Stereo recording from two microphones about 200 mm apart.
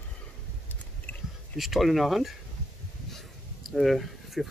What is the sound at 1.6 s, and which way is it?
Speech, centre (ahead or behind).